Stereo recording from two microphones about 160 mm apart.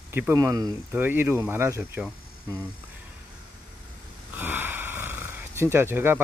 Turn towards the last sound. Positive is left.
turn(degrees=-15)  # may be behind; listen again after turning